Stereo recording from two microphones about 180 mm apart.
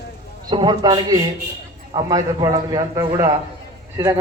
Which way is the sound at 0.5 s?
25° right (ahead or behind).